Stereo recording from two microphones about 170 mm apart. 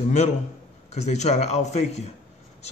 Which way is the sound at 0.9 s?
40° left (ahead or behind).